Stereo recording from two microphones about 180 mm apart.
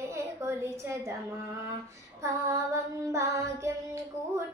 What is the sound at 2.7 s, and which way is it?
Female singing, 15° right (ahead or behind).